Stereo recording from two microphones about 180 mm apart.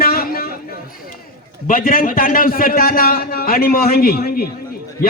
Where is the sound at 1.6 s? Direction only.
50° left (ahead or behind).